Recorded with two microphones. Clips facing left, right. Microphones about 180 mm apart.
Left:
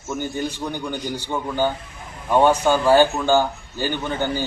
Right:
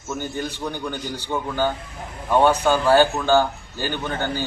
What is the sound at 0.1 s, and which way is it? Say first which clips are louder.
A man's voice: left 2 dB; 15° left (ahead or behind).